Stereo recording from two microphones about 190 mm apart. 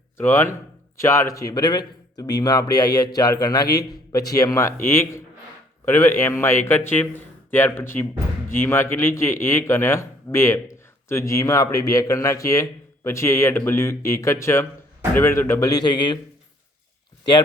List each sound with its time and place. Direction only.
0.2 s speech: 15° left (ahead or behind)